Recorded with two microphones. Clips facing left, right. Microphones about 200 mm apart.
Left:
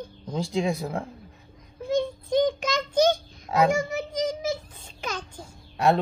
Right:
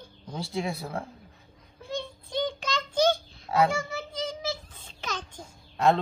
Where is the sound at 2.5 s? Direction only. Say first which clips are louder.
Left 4 dB; 15° left (ahead or behind).